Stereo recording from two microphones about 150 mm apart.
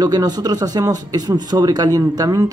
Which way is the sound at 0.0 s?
25° right (ahead or behind).